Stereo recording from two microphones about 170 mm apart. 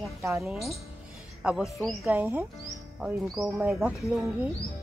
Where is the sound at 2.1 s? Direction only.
10° right (ahead or behind).